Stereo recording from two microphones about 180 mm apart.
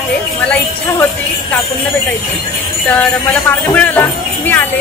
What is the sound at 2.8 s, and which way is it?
Speech, 5° left (ahead or behind).